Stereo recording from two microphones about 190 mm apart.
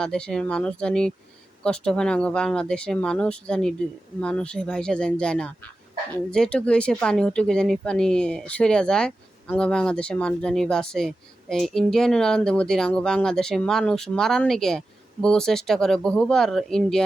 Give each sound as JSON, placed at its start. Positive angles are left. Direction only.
{"t": 0.0, "sound": "speech", "side_deg": 5}